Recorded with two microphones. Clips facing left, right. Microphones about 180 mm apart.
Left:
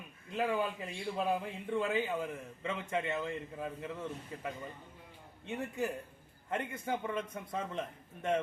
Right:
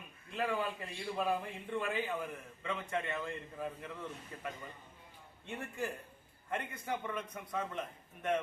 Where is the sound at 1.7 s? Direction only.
20° left (ahead or behind).